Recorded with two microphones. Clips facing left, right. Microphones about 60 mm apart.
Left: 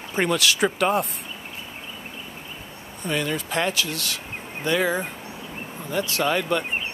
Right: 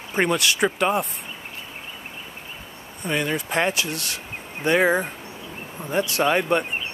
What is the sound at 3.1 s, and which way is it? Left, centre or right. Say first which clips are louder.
Speech: right 1 dB; centre.